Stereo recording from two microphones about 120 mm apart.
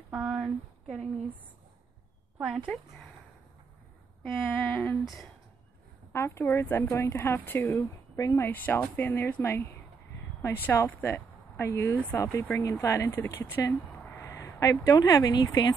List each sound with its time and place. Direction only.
0.1 s a sound: 10° right (ahead or behind)
2.3 s speech: 10° right (ahead or behind)
4.2 s speech: 15° left (ahead or behind)
6.1 s a woman's voice: 20° left (ahead or behind)
8.5 s speech: 15° left (ahead or behind); by 15.7 s 35° left (ahead or behind)